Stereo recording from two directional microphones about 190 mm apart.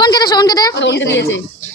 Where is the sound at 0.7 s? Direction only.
70° left (ahead or behind).